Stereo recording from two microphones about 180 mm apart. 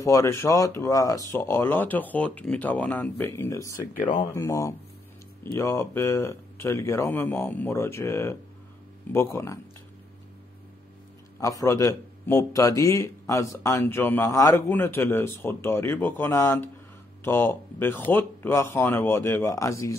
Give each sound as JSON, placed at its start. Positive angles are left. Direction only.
{"t": 0.0, "sound": "a man's voice", "side_deg": 15}
{"t": 11.3, "sound": "a man's voice", "side_deg": 15}